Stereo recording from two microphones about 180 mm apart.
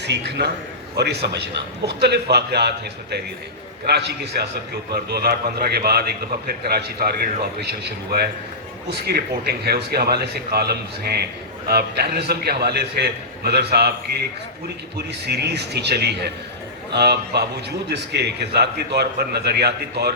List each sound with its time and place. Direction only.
0.0 s a man's voice: 70° right (ahead or behind)
8.9 s a man's voice: 60° right (ahead or behind)
15.3 s a man's voice: 65° right (ahead or behind)